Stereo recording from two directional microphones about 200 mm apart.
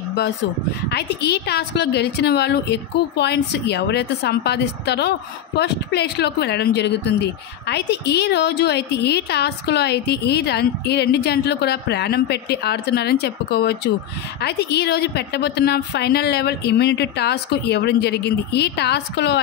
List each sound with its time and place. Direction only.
0.8 s a woman's voice: 55° left (ahead or behind)